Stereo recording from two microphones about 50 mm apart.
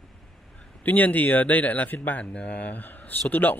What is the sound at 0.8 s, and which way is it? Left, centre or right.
Speech, left.